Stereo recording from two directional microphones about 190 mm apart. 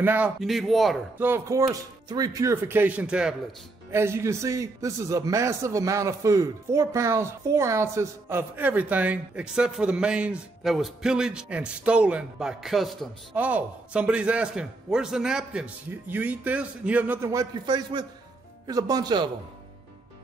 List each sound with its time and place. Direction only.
0.0 s a man's voice: 10° right (ahead or behind)
1.2 s a man's voice: 15° right (ahead or behind)